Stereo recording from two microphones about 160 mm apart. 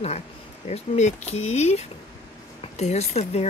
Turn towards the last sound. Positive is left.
turn(degrees=45)  # may be behind; listen again after turning